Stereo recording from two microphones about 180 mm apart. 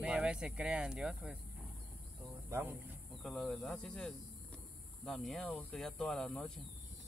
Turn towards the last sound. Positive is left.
turn(degrees=5)  # may be behind; listen again after turning